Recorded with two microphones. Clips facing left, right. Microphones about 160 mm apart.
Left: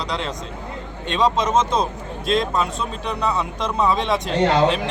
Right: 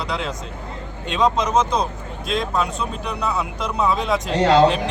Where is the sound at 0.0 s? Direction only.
5° right (ahead or behind).